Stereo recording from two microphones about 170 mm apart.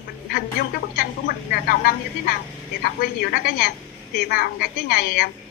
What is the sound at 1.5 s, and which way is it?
A woman's voice, 65° left (ahead or behind).